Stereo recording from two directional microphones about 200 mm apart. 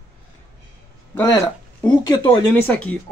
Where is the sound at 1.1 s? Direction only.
15° left (ahead or behind).